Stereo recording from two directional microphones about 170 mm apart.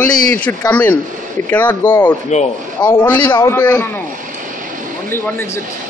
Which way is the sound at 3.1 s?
25° left (ahead or behind).